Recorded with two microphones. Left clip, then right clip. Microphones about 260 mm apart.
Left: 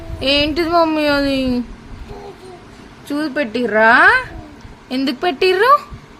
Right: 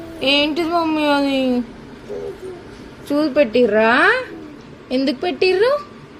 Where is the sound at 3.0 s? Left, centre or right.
Centre.